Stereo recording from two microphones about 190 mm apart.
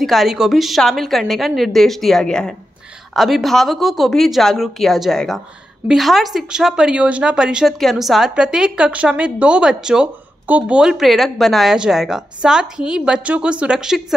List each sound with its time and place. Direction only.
0.0 s a woman's voice: centre (ahead or behind)